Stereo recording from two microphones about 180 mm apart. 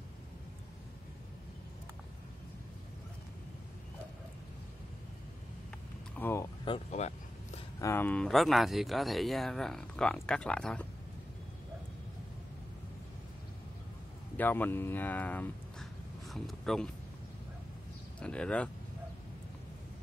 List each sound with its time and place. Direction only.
6.1 s vehicle: 15° left (ahead or behind)
6.6 s a sound: 35° left (ahead or behind)
7.8 s speech: 10° left (ahead or behind)
14.3 s speech: 10° left (ahead or behind)
18.2 s speech: 5° left (ahead or behind)